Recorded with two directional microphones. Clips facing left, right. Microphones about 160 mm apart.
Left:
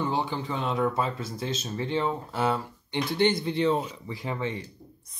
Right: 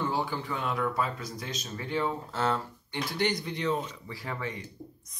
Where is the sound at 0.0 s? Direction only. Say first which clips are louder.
Left 2 dB; 20° left (ahead or behind).